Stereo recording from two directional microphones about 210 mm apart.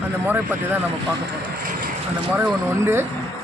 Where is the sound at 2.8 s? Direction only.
10° right (ahead or behind).